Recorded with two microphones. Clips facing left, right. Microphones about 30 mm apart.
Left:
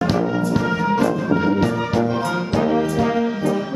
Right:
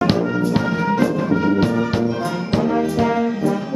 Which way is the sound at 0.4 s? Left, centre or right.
Right.